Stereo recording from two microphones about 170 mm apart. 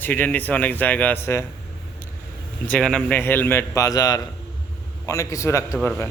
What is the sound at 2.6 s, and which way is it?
A man's voice, 5° left (ahead or behind).